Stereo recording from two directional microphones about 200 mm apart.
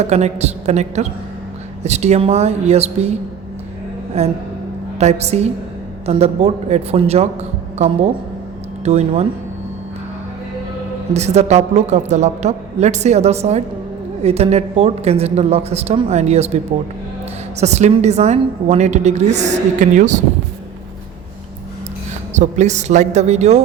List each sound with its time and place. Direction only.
0.0 s a woman's voice: 35° right (ahead or behind)
4.2 s a woman's voice: 30° right (ahead or behind)
8.8 s speech: 35° right (ahead or behind)
11.1 s a woman's voice: 35° right (ahead or behind)
17.6 s a woman's voice: 35° right (ahead or behind)
22.4 s a woman's voice: 35° right (ahead or behind)